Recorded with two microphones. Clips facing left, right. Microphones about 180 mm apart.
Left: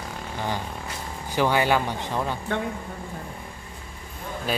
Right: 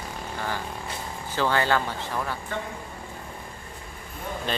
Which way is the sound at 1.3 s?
15° left (ahead or behind).